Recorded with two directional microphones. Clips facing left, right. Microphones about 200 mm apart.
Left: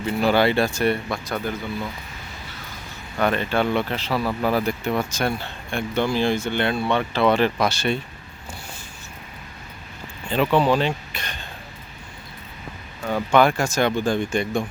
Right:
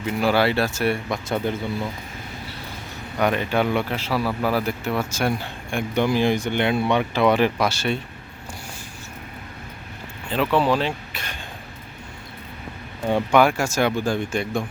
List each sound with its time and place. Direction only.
0.0 s speech: 5° right (ahead or behind)
1.3 s speech: 25° right (ahead or behind)
3.2 s speech: 10° right (ahead or behind)
10.2 s speech: 5° right (ahead or behind)
13.5 s speech: 10° right (ahead or behind)